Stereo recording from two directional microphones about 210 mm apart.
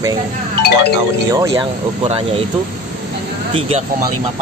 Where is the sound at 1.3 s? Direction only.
15° right (ahead or behind).